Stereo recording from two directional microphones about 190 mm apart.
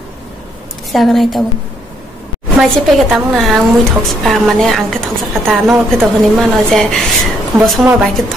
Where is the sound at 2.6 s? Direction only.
Centre (ahead or behind).